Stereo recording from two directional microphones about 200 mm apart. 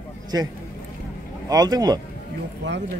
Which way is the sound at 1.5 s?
20° right (ahead or behind).